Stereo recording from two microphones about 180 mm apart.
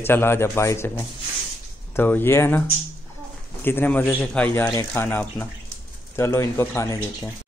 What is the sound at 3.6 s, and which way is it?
Speech, 10° left (ahead or behind).